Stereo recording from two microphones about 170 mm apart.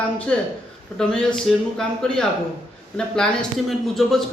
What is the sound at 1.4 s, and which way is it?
Speech, 5° left (ahead or behind).